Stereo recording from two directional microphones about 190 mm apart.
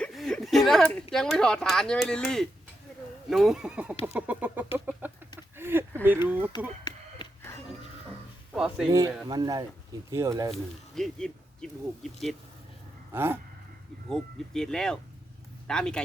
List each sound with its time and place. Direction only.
0.0 s chuckle: centre (ahead or behind)
1.1 s speech: 5° left (ahead or behind)
4.0 s chicken: 10° right (ahead or behind)
6.8 s a sound: 20° left (ahead or behind)
8.5 s speech: 5° right (ahead or behind)
8.9 s speech: 20° right (ahead or behind)
10.1 s chicken: 15° right (ahead or behind)
10.9 s speech: centre (ahead or behind)
13.1 s chicken: 10° right (ahead or behind)
14.1 s speech: 5° left (ahead or behind)